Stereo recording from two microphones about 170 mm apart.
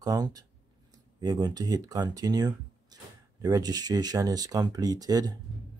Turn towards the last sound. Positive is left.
turn(degrees=-20)  # may be behind; listen again after turning